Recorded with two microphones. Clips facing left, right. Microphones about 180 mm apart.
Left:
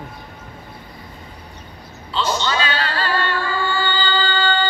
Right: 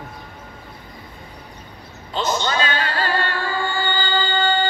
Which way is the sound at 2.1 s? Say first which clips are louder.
Even; 45° right (ahead or behind).